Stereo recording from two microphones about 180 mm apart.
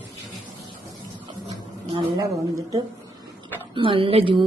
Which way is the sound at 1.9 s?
25° right (ahead or behind).